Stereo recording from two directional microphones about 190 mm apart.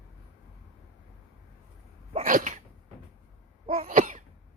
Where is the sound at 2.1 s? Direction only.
45° right (ahead or behind).